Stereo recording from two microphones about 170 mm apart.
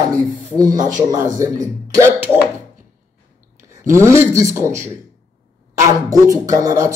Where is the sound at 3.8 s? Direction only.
15° right (ahead or behind).